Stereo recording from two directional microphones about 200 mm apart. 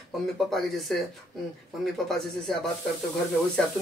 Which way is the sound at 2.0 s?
Centre (ahead or behind).